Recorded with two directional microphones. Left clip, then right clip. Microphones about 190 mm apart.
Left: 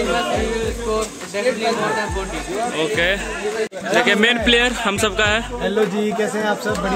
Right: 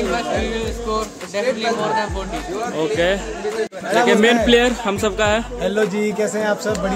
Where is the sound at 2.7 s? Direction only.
20° right (ahead or behind).